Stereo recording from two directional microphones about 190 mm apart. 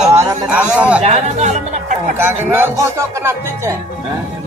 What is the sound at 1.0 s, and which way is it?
Speech, 35° right (ahead or behind).